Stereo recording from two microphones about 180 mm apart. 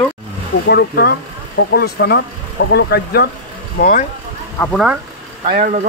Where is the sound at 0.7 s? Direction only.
60° left (ahead or behind).